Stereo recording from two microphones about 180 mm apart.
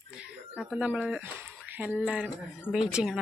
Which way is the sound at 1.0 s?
10° right (ahead or behind).